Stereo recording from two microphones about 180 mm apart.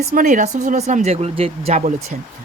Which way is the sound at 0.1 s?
45° right (ahead or behind).